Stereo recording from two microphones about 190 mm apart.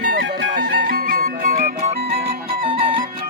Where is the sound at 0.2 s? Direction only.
70° right (ahead or behind); by 2.0 s 45° right (ahead or behind).